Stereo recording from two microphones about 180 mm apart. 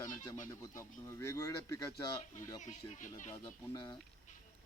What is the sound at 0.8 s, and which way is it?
Speech, 15° left (ahead or behind).